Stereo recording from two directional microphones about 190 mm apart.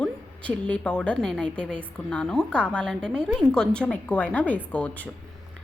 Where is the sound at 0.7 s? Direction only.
5° left (ahead or behind).